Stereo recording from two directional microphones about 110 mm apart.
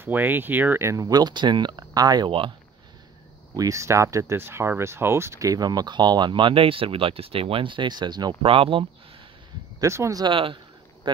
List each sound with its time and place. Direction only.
0.0 s speech: 15° right (ahead or behind); by 2.5 s 50° right (ahead or behind)
3.5 s speech: 30° right (ahead or behind)
8.4 s speech: 55° right (ahead or behind)
9.8 s speech: 25° right (ahead or behind)
10.2 s speech: 50° right (ahead or behind)